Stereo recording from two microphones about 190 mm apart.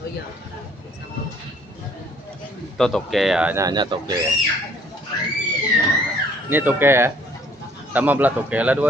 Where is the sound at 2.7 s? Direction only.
Centre (ahead or behind); by 4.1 s 20° right (ahead or behind).